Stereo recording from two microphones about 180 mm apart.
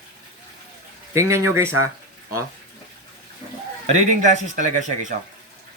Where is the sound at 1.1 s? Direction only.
15° right (ahead or behind).